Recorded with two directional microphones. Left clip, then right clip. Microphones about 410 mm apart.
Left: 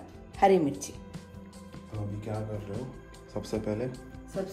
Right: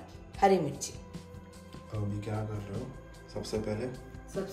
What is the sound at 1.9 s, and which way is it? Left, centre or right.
Speech, centre.